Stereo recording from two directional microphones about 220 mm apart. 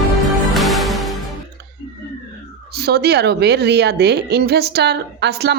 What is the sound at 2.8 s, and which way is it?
A woman's voice, 45° right (ahead or behind).